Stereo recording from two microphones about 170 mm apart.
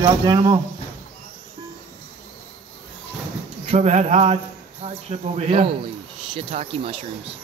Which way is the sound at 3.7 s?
40° right (ahead or behind).